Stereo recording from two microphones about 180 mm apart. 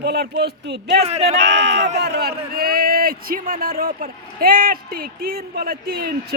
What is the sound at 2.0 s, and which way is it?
A man's voice, 60° right (ahead or behind).